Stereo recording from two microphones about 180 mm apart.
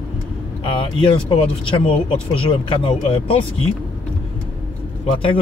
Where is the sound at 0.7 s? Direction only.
30° left (ahead or behind).